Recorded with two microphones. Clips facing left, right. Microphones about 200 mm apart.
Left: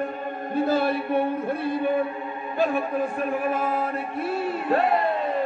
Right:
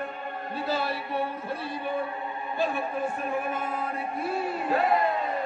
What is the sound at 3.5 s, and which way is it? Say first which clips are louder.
Chant: left 6 dB; 90° left.